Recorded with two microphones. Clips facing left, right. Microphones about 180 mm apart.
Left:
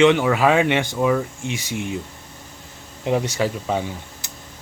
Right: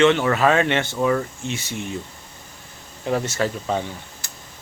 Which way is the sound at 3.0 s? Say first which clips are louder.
Left 2 dB; 15° left (ahead or behind).